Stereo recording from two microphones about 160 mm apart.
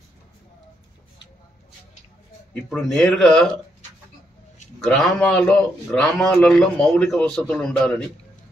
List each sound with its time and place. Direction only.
2.5 s a man's voice: centre (ahead or behind)
4.8 s a man's voice: 5° left (ahead or behind)